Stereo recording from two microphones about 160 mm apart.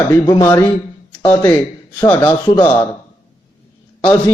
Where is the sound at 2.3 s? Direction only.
30° left (ahead or behind).